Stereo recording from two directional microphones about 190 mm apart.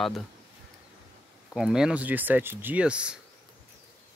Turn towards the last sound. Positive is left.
turn(degrees=-5)  # may be behind; listen again after turning